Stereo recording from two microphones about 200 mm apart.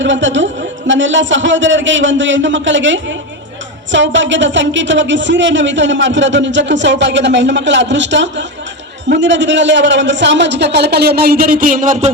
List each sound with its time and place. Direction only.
0.0 s a man's voice: 65° right (ahead or behind); by 12.1 s 35° right (ahead or behind)